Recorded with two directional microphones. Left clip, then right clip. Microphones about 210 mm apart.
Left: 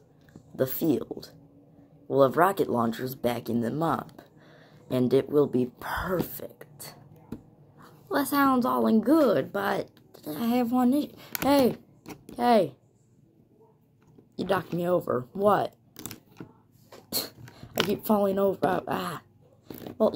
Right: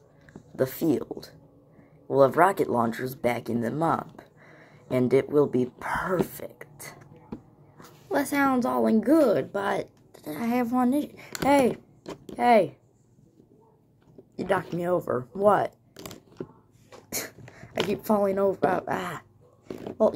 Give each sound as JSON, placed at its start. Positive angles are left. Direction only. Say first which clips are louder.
{"t": 0.3, "sound": "speech", "louder": "right 1 dB", "side_deg": 0}
{"t": 8.1, "sound": "a woman's voice", "louder": "even", "side_deg": 0}
{"t": 12.4, "sound": "speech", "louder": "right 2 dB", "side_deg": -10}
{"t": 14.5, "sound": "speech", "louder": "even", "side_deg": 5}
{"t": 17.1, "sound": "speech", "louder": "left 2 dB", "side_deg": 5}